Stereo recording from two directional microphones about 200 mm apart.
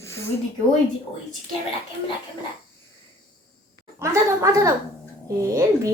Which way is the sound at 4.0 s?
15° right (ahead or behind).